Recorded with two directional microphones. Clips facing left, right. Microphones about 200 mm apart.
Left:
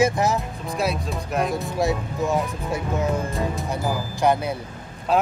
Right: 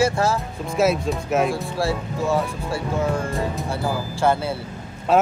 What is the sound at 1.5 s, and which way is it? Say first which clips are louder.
Speech: left 1 dB; 20° left (ahead or behind).